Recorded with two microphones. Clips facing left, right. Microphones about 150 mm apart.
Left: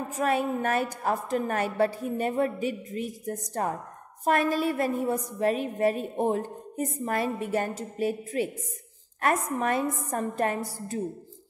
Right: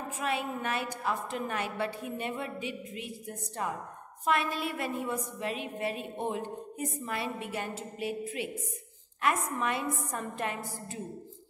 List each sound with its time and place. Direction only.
0.2 s a woman's voice: 45° left (ahead or behind)